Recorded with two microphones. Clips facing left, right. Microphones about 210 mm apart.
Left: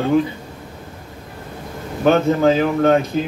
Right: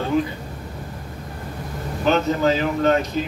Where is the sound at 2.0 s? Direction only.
50° left (ahead or behind).